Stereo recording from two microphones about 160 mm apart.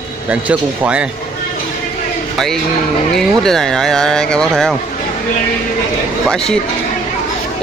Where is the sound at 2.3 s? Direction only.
Centre (ahead or behind).